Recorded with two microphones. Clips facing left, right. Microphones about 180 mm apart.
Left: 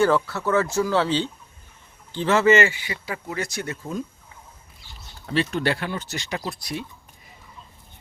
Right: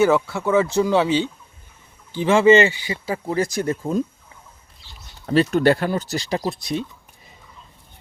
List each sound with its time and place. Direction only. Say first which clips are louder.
0.0 s speech: right 3 dB; 10° right (ahead or behind)
2.5 s speech: right 4 dB; 30° right (ahead or behind)
5.2 s speech: right 7 dB; 40° right (ahead or behind)
6.4 s speech: right 6 dB; 25° right (ahead or behind)